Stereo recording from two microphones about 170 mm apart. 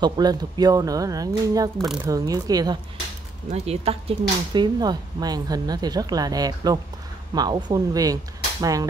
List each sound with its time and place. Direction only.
0.0 s speech: 25° right (ahead or behind)
3.4 s speech: 40° right (ahead or behind)
4.2 s speech: 25° right (ahead or behind)